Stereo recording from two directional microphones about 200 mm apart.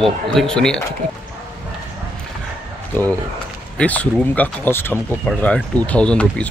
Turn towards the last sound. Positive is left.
turn(degrees=5)  # may be behind; listen again after turning